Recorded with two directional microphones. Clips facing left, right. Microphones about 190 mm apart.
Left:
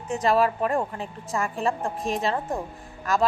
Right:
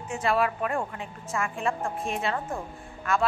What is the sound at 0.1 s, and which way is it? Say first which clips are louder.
Speech: left 4 dB; 35° left (ahead or behind).